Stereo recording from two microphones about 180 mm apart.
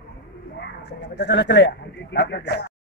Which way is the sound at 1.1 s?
75° left (ahead or behind).